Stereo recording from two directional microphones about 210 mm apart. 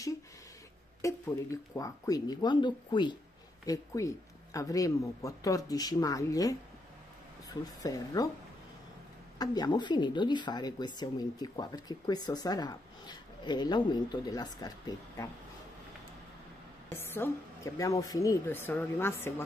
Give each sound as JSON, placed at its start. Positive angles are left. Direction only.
{"t": 1.0, "sound": "speech", "side_deg": 15}
{"t": 9.4, "sound": "speech", "side_deg": 20}
{"t": 17.0, "sound": "speech", "side_deg": 10}